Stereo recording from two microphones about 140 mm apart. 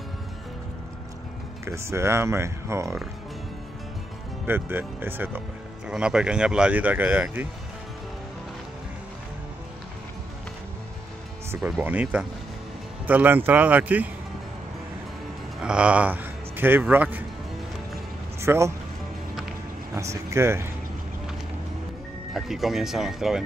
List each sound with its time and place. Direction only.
1.6 s speech: 20° right (ahead or behind)
4.5 s speech: 15° right (ahead or behind)
11.8 s speech: 10° right (ahead or behind)
15.6 s speech: 5° right (ahead or behind)
18.4 s speech: 20° right (ahead or behind)
20.0 s speech: 20° right (ahead or behind)
22.3 s speech: centre (ahead or behind)